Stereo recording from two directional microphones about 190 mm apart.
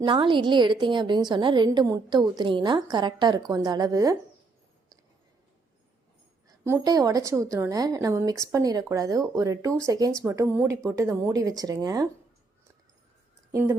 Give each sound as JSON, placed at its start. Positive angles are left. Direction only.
{"t": 0.0, "sound": "a woman's voice", "side_deg": -25}
{"t": 6.7, "sound": "a woman's voice", "side_deg": -20}
{"t": 13.5, "sound": "speech", "side_deg": -15}